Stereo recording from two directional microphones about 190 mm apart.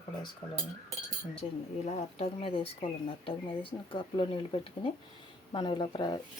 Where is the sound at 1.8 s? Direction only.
30° left (ahead or behind).